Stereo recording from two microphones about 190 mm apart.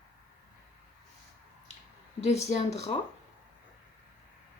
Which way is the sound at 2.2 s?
35° left (ahead or behind).